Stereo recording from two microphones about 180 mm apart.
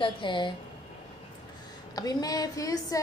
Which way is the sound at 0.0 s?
25° left (ahead or behind).